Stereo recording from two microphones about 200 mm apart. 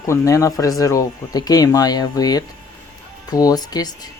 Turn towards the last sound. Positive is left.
turn(degrees=20)  # may be behind; listen again after turning